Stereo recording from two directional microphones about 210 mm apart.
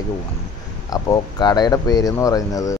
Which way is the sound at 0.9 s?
20° left (ahead or behind).